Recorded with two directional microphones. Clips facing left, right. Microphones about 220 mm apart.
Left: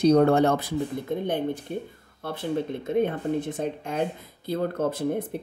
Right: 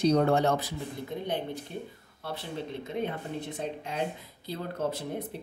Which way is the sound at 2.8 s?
50° left (ahead or behind).